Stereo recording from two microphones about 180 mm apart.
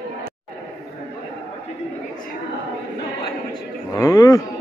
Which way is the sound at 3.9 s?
20° left (ahead or behind).